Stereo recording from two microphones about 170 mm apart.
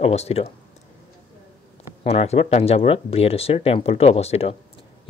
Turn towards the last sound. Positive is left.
turn(degrees=35)  # may be behind; listen again after turning